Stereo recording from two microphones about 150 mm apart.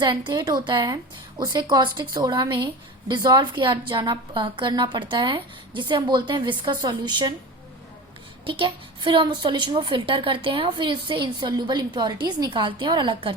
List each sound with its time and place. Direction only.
0.0 s a woman's voice: 30° right (ahead or behind)
8.4 s a woman's voice: 35° right (ahead or behind)